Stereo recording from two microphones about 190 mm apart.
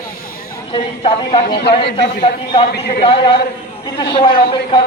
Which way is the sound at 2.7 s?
60° left (ahead or behind).